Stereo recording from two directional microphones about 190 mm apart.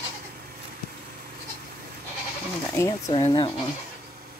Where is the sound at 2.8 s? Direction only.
15° left (ahead or behind).